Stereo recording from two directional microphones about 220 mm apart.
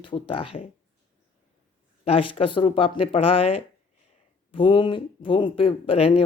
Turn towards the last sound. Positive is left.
turn(degrees=25)  # may be behind; listen again after turning